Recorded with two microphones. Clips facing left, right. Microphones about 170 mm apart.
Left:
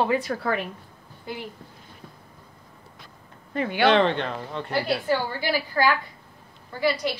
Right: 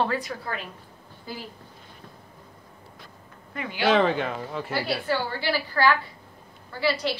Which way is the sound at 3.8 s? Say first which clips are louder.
Left 1 dB; 5° right (ahead or behind).